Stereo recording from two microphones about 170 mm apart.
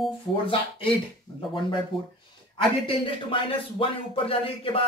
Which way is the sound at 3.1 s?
30° left (ahead or behind).